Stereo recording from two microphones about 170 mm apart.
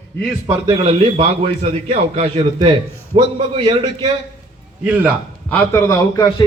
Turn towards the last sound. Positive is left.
turn(degrees=15)  # may be behind; listen again after turning